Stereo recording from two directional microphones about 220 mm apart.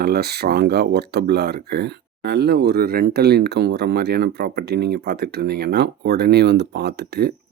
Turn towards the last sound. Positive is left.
turn(degrees=-45)  # may be behind; listen again after turning